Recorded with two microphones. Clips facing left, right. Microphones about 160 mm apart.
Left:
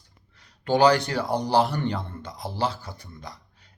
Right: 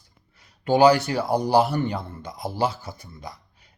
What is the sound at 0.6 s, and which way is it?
Speech, 10° right (ahead or behind).